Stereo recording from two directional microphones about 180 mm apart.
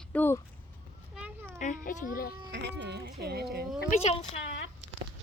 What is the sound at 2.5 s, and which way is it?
Speech, 75° right (ahead or behind).